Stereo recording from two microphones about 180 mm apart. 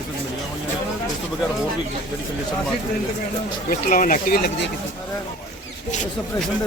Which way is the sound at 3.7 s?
50° left (ahead or behind).